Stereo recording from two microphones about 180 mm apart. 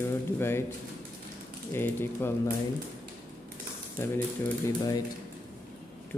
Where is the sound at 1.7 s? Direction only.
15° left (ahead or behind).